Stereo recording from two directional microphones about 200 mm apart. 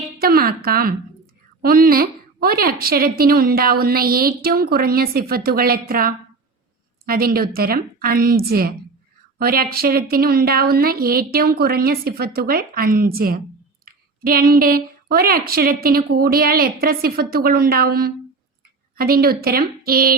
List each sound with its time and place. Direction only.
0.2 s a woman's voice: 50° right (ahead or behind)